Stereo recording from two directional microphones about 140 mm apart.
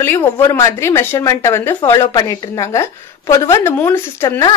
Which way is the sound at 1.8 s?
30° left (ahead or behind).